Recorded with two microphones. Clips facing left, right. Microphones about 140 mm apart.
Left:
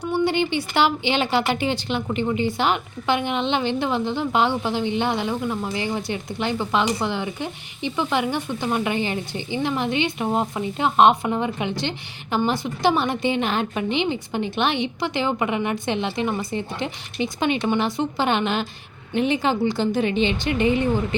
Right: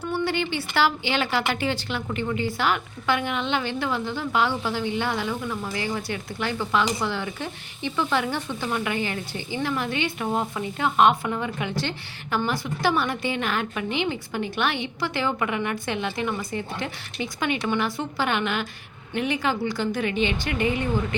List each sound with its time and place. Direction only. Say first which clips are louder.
0.0 s a woman's voice: left 4 dB; 20° left (ahead or behind)